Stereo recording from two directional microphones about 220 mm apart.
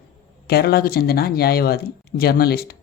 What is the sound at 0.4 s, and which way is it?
Speech, 45° left (ahead or behind).